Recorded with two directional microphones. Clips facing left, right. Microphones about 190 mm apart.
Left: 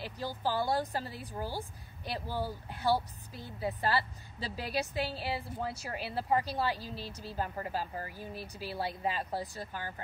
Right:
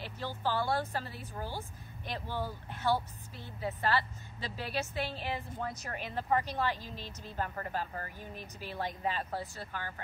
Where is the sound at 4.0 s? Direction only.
35° left (ahead or behind).